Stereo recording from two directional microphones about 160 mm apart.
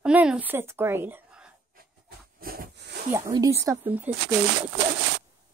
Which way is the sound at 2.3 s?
65° right (ahead or behind).